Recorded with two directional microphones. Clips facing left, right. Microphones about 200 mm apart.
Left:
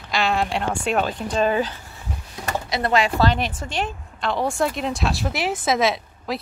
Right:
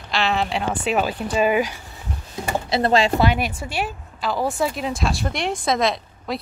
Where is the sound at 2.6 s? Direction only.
30° right (ahead or behind).